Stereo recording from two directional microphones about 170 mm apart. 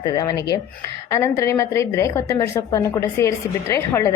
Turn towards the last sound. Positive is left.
turn(degrees=20)  # may be behind; listen again after turning